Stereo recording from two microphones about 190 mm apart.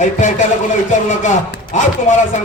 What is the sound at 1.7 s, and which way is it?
Speech, 40° left (ahead or behind).